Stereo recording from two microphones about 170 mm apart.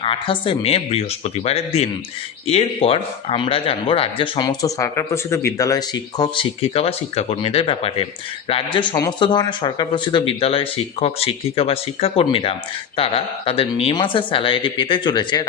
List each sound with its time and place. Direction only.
0.0 s speech: 30° left (ahead or behind)